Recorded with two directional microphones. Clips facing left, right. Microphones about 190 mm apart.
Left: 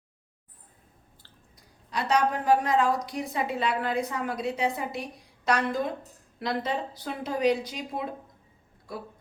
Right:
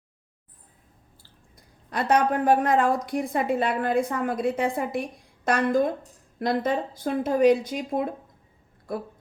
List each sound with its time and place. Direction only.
1.5 s a woman's voice: 55° right (ahead or behind)